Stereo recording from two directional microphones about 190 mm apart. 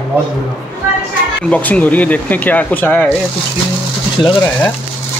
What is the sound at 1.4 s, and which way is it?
Speech, 10° left (ahead or behind).